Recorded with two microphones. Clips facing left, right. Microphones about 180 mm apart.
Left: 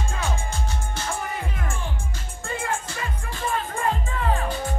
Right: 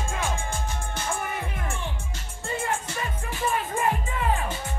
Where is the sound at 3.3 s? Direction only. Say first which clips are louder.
Even; 15° right (ahead or behind).